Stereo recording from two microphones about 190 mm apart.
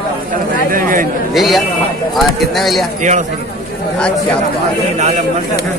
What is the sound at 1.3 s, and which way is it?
Speech, centre (ahead or behind).